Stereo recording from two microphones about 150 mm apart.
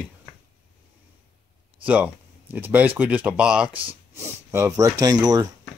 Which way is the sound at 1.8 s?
10° right (ahead or behind).